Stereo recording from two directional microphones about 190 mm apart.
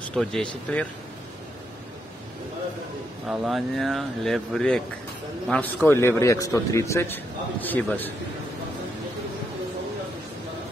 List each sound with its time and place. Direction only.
0.1 s speech: 5° left (ahead or behind)
3.3 s speech: centre (ahead or behind)